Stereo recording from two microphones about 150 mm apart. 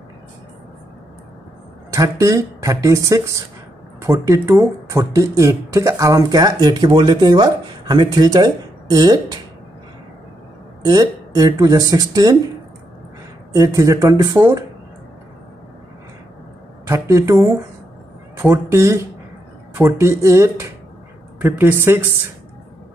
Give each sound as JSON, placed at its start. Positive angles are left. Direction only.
{"t": 1.9, "sound": "speech", "side_deg": -20}
{"t": 10.9, "sound": "speech", "side_deg": -25}
{"t": 13.5, "sound": "speech", "side_deg": -20}
{"t": 16.8, "sound": "speech", "side_deg": -20}